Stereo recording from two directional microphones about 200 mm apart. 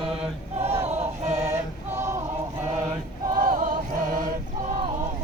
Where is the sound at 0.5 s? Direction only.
30° right (ahead or behind).